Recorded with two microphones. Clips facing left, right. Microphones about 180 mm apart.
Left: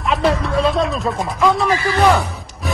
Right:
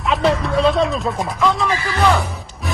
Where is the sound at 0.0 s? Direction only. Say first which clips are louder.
Even; centre (ahead or behind).